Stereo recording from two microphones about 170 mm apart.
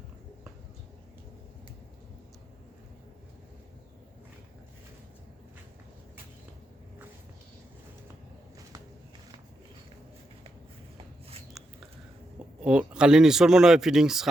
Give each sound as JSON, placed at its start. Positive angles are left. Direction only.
{"t": 12.6, "sound": "speech", "side_deg": -5}